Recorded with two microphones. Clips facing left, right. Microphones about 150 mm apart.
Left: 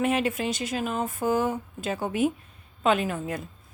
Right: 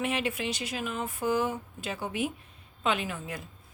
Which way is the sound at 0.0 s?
45° left (ahead or behind).